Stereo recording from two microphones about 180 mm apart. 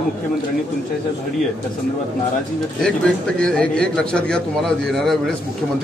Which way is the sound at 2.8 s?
5° left (ahead or behind).